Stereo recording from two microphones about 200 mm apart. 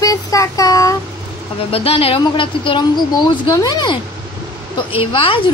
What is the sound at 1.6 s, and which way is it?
Speech, 30° left (ahead or behind).